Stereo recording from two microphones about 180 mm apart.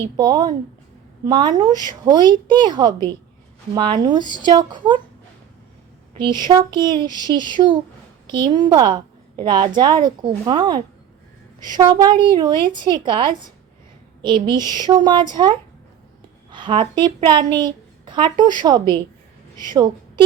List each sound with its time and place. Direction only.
0.2 s a woman's voice: 20° right (ahead or behind)
4.2 s speech: 25° left (ahead or behind)
4.4 s a woman's voice: 25° right (ahead or behind)
6.1 s a woman's voice: 25° right (ahead or behind)
11.9 s a woman's voice: 25° right (ahead or behind)